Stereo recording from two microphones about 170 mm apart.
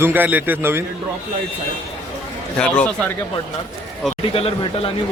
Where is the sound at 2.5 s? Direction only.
5° left (ahead or behind).